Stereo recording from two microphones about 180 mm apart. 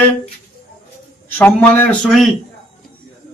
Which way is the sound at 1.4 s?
10° left (ahead or behind).